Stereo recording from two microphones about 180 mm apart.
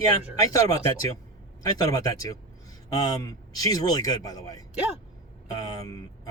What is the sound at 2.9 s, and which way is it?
Speech, 20° left (ahead or behind).